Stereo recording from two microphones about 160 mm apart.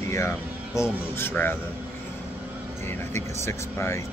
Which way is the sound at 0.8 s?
15° left (ahead or behind).